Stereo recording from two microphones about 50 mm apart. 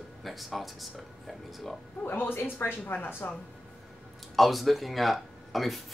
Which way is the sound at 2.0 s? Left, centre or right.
Left.